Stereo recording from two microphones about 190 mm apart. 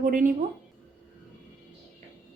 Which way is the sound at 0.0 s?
45° right (ahead or behind).